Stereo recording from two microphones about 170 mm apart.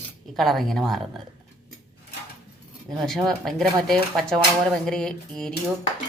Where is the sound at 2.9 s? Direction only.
Centre (ahead or behind).